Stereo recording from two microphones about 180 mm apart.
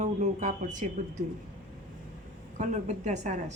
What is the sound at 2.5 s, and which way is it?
A woman's voice, 40° right (ahead or behind).